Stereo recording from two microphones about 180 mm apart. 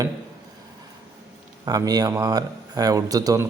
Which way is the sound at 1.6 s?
20° right (ahead or behind).